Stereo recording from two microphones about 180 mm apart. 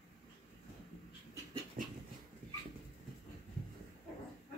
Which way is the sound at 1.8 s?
50° right (ahead or behind).